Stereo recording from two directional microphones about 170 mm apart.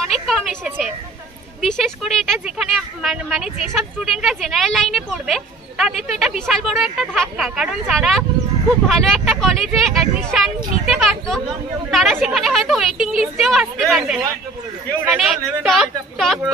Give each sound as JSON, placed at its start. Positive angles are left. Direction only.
{"t": 0.1, "sound": "speech", "side_deg": 0}